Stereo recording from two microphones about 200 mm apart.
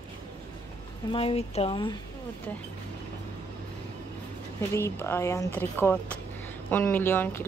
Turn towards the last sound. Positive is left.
turn(degrees=10)  # may be behind; listen again after turning